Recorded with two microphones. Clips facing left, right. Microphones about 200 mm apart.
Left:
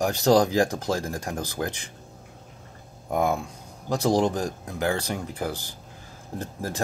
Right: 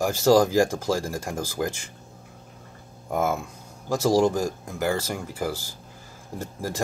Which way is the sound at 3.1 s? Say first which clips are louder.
Left 1 dB; 5° right (ahead or behind).